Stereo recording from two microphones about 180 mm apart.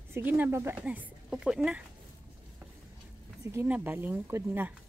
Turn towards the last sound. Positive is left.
turn(degrees=-10)  # may be behind; listen again after turning